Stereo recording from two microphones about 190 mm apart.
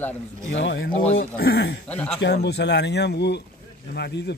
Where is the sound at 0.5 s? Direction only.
65° left (ahead or behind).